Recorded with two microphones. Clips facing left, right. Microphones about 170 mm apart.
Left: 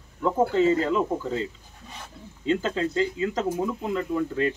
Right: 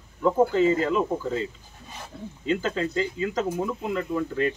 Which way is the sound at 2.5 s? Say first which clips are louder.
Left 1 dB; 30° left (ahead or behind).